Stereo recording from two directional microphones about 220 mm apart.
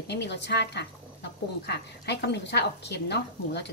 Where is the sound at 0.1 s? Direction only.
50° left (ahead or behind).